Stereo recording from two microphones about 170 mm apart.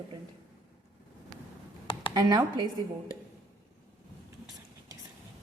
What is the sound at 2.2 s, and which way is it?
Speech, 25° right (ahead or behind).